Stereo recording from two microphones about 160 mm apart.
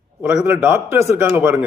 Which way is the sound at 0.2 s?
10° right (ahead or behind).